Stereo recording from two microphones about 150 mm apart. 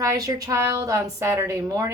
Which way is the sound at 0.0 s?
20° right (ahead or behind).